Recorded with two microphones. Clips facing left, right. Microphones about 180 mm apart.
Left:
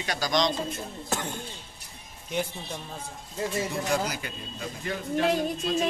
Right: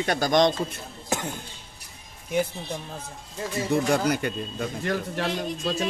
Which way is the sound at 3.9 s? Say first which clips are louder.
Right 5 dB; 60° right (ahead or behind).